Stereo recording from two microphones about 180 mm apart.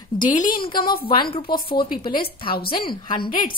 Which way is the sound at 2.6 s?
25° left (ahead or behind).